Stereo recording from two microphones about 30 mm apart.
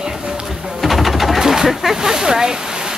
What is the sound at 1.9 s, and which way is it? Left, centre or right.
Speech, centre.